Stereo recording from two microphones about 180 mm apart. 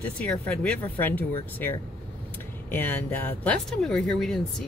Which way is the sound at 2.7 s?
10° left (ahead or behind).